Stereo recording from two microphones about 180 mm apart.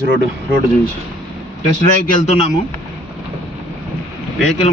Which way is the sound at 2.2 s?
35° left (ahead or behind).